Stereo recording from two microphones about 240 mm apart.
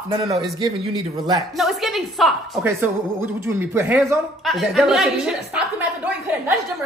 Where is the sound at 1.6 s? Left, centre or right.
Centre.